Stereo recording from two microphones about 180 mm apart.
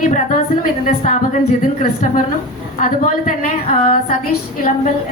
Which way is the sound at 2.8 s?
50° left (ahead or behind).